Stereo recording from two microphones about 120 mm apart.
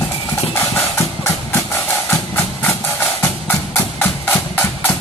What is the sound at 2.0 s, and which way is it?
Music, 15° left (ahead or behind).